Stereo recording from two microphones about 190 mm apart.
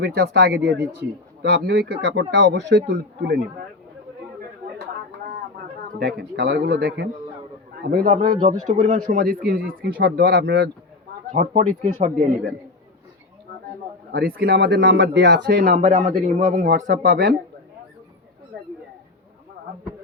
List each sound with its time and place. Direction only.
0.0 s speech: 60° right (ahead or behind)
6.0 s a man's voice: 55° right (ahead or behind)
11.3 s a man's voice: 40° right (ahead or behind)
14.2 s speech: 50° right (ahead or behind)
15.6 s a man's voice: 40° right (ahead or behind)